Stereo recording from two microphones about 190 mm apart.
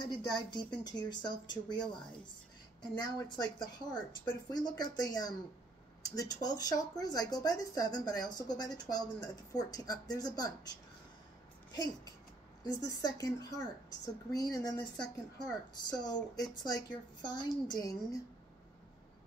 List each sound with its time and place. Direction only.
0.0 s a woman's voice: 20° left (ahead or behind)
2.8 s a woman's voice: 20° left (ahead or behind)